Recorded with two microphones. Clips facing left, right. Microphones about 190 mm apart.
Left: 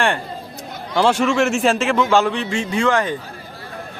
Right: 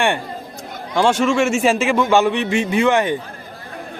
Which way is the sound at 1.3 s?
Centre (ahead or behind).